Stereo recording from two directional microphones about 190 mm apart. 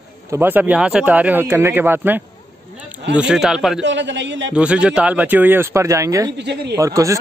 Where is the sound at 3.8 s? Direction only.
70° right (ahead or behind).